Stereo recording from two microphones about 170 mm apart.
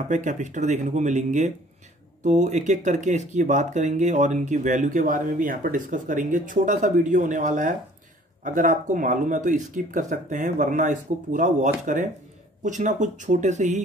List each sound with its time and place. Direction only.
0.1 s speech: 45° right (ahead or behind)